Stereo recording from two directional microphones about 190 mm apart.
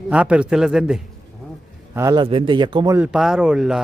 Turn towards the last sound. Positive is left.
turn(degrees=-5)  # may be behind; listen again after turning